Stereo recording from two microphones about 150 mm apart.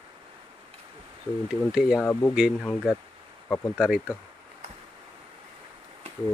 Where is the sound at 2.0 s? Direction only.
20° left (ahead or behind).